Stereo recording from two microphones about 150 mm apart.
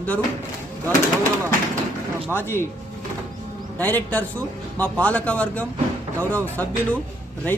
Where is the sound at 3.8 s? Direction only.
10° left (ahead or behind).